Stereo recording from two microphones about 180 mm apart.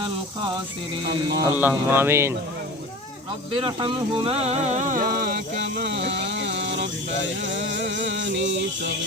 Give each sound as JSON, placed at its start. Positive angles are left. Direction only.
{"t": 1.4, "sound": "speech", "side_deg": -10}
{"t": 3.5, "sound": "speech", "side_deg": -25}
{"t": 5.7, "sound": "a sound", "side_deg": -70}
{"t": 7.4, "sound": "music", "side_deg": -90}